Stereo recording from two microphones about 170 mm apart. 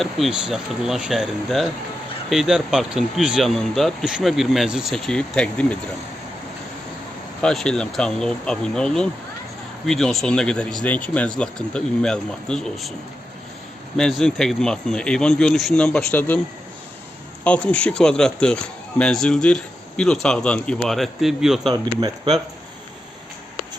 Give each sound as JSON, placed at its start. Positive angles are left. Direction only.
{"t": 0.0, "sound": "a man's voice", "side_deg": 0}
{"t": 7.4, "sound": "a man's voice", "side_deg": 5}
{"t": 13.9, "sound": "a man's voice", "side_deg": 5}
{"t": 17.4, "sound": "a man's voice", "side_deg": 5}
{"t": 21.7, "sound": "speech", "side_deg": -25}